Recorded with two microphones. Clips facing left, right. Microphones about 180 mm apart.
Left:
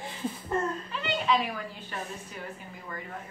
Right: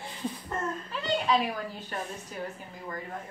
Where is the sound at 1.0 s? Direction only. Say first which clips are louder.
Right 1 dB; 40° right (ahead or behind).